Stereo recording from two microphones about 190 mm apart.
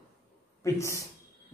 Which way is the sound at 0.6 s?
15° left (ahead or behind).